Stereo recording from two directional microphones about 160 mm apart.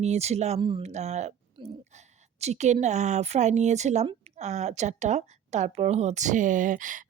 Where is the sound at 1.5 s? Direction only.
45° right (ahead or behind).